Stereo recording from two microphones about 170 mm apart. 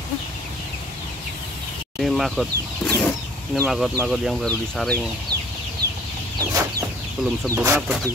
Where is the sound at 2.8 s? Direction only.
5° left (ahead or behind).